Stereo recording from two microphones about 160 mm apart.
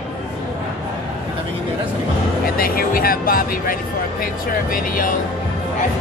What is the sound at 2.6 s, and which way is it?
Speech, 65° left (ahead or behind).